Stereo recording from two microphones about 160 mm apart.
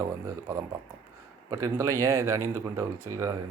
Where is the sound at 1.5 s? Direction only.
20° right (ahead or behind).